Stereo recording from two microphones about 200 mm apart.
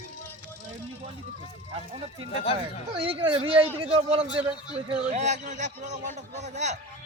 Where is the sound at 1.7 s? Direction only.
30° right (ahead or behind).